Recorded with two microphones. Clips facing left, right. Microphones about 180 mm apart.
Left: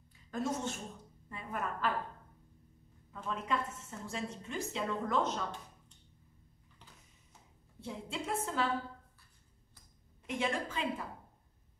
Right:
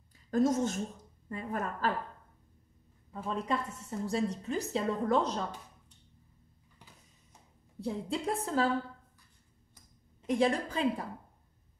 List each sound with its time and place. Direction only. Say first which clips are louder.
0.3 s a woman's voice: right 8 dB; 40° right (ahead or behind)
3.3 s a woman's voice: right 3 dB; 35° right (ahead or behind)
6.8 s a sound: right 2 dB; 10° right (ahead or behind)
7.8 s a woman's voice: right 7 dB; 35° right (ahead or behind)
10.2 s a woman's voice: right 7 dB; 35° right (ahead or behind)